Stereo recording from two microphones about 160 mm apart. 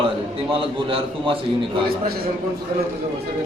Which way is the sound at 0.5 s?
35° right (ahead or behind).